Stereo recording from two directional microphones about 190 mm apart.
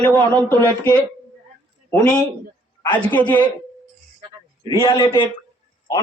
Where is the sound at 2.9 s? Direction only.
10° left (ahead or behind).